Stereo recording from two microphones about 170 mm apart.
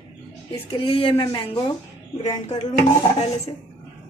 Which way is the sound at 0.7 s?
30° left (ahead or behind).